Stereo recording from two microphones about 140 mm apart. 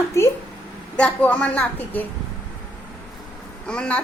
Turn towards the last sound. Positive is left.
turn(degrees=5)  # may be behind; listen again after turning